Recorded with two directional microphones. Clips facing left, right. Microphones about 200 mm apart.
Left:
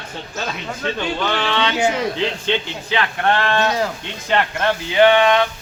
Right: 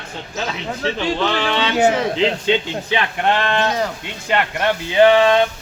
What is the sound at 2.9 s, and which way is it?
Speech, 20° right (ahead or behind).